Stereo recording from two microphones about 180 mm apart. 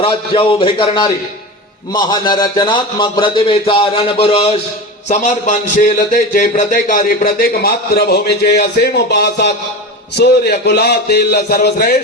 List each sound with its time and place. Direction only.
0.0 s a man's voice: 30° left (ahead or behind); by 11.9 s 60° left (ahead or behind)